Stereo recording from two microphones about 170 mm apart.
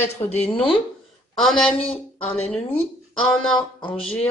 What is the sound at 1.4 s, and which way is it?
Speech, 5° left (ahead or behind).